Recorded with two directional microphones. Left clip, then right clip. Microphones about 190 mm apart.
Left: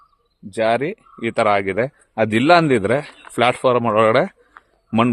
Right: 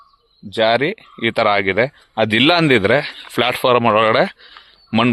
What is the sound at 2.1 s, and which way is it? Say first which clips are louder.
Speech: right 2 dB; 5° left (ahead or behind).